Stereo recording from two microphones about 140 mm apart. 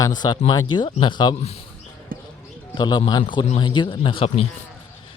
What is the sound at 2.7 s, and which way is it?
Speech, 30° left (ahead or behind).